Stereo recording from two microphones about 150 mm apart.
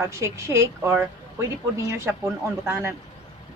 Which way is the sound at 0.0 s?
20° right (ahead or behind).